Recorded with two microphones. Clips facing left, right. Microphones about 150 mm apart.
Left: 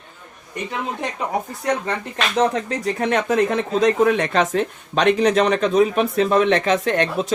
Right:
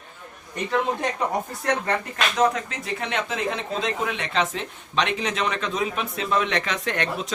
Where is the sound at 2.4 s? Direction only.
35° left (ahead or behind).